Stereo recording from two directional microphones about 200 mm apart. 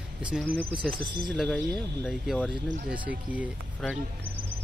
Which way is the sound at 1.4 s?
5° left (ahead or behind).